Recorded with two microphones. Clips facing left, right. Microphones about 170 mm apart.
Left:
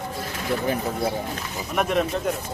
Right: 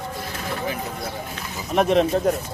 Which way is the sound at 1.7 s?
30° right (ahead or behind).